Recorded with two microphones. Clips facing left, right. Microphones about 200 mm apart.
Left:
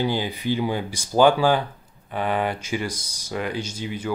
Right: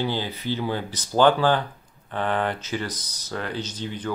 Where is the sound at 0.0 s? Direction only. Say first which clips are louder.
Left 3 dB; 15° left (ahead or behind).